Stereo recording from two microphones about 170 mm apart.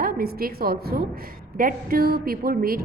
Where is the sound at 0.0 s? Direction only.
60° right (ahead or behind).